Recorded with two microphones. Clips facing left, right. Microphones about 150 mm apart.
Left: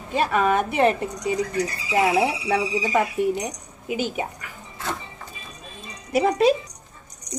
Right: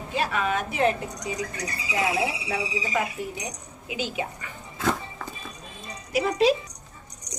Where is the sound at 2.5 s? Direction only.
60° left (ahead or behind).